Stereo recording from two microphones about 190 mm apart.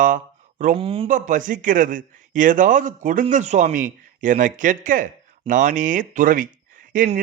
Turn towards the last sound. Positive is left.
turn(degrees=-55)  # may be behind; listen again after turning